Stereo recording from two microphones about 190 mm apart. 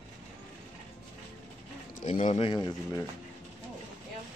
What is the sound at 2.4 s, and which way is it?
Speech, 25° left (ahead or behind).